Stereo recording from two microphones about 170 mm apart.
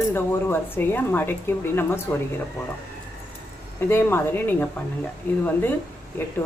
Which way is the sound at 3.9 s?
10° left (ahead or behind).